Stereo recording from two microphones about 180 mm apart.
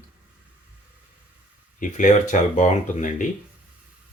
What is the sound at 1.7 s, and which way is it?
Speech, 45° left (ahead or behind).